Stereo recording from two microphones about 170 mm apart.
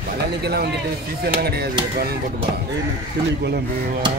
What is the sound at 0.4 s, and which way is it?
Speech, 70° right (ahead or behind).